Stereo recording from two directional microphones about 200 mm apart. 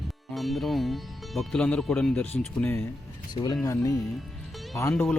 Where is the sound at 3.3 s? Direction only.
20° left (ahead or behind).